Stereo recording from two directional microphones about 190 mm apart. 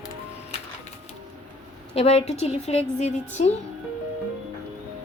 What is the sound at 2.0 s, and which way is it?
A woman's voice, 35° left (ahead or behind).